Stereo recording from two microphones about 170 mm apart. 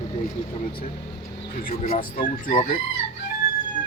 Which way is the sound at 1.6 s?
60° left (ahead or behind).